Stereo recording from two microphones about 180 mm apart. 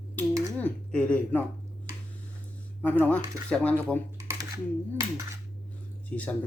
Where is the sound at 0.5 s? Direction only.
10° left (ahead or behind).